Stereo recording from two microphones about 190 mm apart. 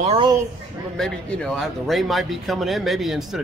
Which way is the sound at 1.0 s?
5° left (ahead or behind).